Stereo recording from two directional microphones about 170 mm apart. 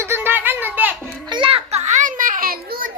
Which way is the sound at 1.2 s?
30° right (ahead or behind).